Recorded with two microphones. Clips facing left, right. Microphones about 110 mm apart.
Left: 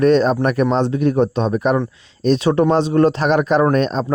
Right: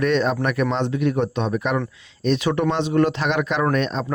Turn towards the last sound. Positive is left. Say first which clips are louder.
# left 5 dB
turn(degrees=40)  # may be behind; listen again after turning